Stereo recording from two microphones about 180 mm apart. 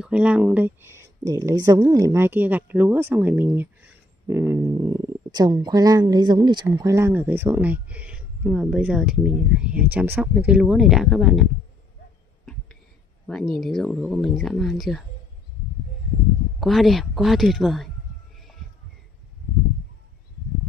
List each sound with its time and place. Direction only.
0.0 s speech: 5° right (ahead or behind)
13.3 s speech: centre (ahead or behind)
16.5 s speech: centre (ahead or behind)